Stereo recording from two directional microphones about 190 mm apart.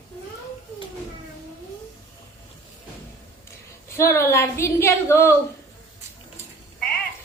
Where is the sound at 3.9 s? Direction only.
15° left (ahead or behind).